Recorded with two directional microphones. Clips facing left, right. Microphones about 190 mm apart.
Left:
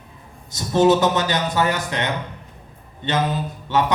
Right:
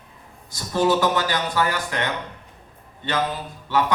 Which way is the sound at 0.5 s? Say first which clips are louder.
Left 5 dB; 20° left (ahead or behind).